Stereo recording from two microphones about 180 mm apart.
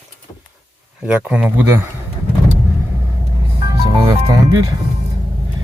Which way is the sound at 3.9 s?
20° right (ahead or behind).